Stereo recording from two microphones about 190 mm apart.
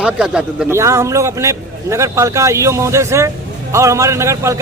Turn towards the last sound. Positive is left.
turn(degrees=-15)  # may be behind; listen again after turning